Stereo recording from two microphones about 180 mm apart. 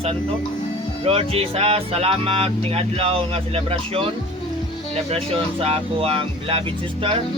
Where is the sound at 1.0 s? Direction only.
30° right (ahead or behind).